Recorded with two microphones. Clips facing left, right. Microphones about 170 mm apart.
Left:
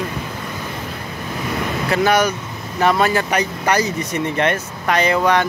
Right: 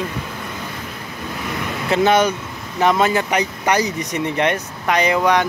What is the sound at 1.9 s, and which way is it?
Speech, 25° right (ahead or behind).